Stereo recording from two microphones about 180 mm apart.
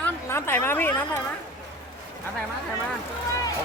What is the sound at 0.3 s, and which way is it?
Speech, 15° left (ahead or behind).